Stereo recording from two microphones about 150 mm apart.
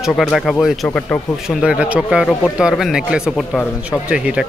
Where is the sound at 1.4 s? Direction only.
5° right (ahead or behind).